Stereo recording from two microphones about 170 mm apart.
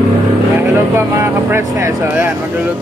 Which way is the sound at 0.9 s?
15° right (ahead or behind).